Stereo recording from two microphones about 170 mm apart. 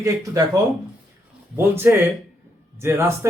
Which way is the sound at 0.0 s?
20° right (ahead or behind).